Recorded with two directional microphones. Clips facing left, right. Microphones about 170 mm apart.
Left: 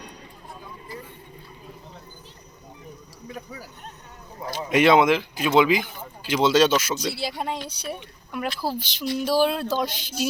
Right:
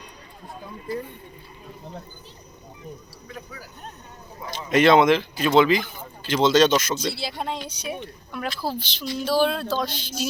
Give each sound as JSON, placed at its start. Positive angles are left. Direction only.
{"t": 4.5, "sound": "speech", "side_deg": 10}